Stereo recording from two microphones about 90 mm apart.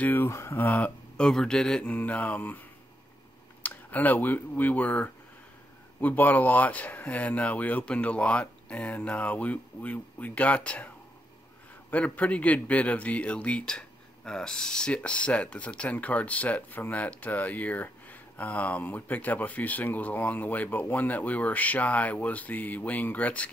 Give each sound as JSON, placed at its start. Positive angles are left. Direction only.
{"t": 0.0, "sound": "speech", "side_deg": 25}
{"t": 3.6, "sound": "speech", "side_deg": 20}
{"t": 11.9, "sound": "speech", "side_deg": 15}